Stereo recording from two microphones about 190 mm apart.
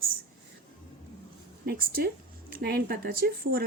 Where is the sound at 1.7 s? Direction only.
50° right (ahead or behind).